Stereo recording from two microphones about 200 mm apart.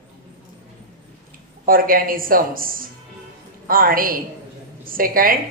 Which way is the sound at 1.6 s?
45° right (ahead or behind).